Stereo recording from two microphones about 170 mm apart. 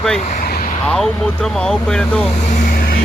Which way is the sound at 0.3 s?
55° left (ahead or behind).